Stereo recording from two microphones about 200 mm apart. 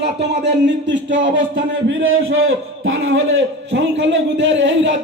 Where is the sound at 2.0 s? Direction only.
80° right.